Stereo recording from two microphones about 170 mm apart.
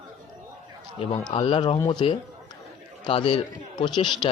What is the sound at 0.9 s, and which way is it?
A man's voice, 30° left (ahead or behind).